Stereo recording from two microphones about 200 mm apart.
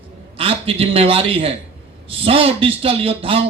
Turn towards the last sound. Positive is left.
turn(degrees=-30)  # may be behind; listen again after turning